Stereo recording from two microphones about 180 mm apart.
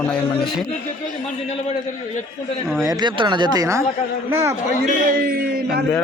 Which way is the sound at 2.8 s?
20° right (ahead or behind).